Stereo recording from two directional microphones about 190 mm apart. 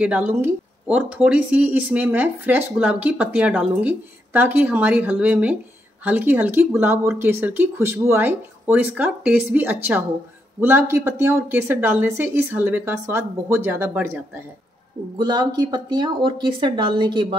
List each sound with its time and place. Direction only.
0.0 s speech: 10° right (ahead or behind)
15.1 s speech: 25° right (ahead or behind)